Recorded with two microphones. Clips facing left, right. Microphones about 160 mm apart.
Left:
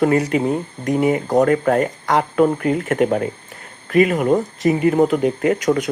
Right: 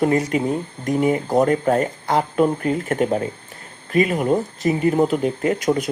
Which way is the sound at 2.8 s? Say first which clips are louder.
Left 3 dB; 50° left (ahead or behind).